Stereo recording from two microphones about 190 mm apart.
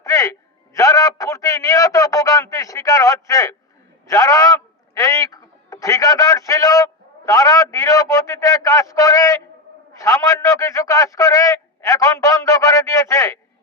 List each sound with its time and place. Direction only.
0.0 s a man's voice: 15° left (ahead or behind)